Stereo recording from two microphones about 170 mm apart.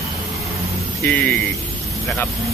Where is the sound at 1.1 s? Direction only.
5° left (ahead or behind).